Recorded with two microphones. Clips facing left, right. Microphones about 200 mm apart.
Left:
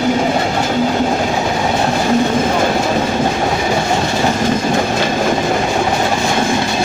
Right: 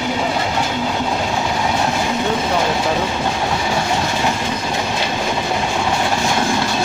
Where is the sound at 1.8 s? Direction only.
45° left (ahead or behind).